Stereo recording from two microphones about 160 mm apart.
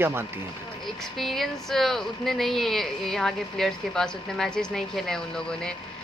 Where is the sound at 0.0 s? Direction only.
15° right (ahead or behind).